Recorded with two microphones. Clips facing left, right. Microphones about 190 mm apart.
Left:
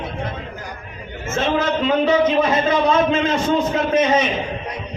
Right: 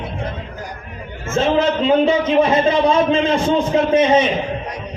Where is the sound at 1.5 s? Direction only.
30° right (ahead or behind).